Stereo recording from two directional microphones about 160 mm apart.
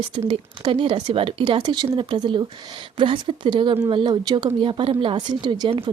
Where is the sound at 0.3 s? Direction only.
35° right (ahead or behind).